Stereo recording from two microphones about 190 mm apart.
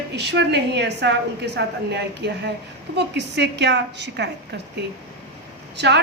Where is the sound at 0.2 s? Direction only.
65° right (ahead or behind).